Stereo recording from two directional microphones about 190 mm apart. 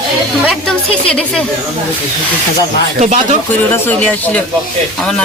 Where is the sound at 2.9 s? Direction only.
40° right (ahead or behind).